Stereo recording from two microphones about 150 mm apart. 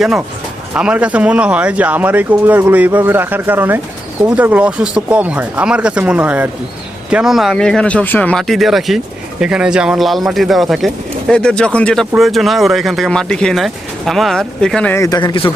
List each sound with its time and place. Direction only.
0.0 s speech: 5° right (ahead or behind)
14.9 s speech: 20° left (ahead or behind)